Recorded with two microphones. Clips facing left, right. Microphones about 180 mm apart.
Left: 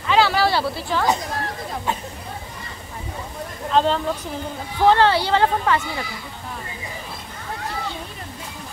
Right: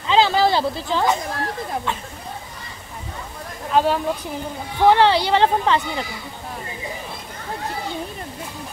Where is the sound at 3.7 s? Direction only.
10° right (ahead or behind).